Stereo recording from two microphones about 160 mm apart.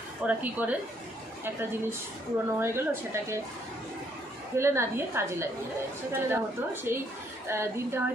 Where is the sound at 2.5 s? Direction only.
15° right (ahead or behind).